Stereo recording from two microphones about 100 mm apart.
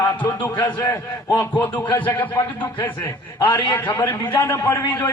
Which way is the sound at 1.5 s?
20° left (ahead or behind).